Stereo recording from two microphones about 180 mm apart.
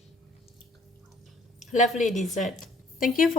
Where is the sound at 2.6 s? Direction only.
50° left (ahead or behind).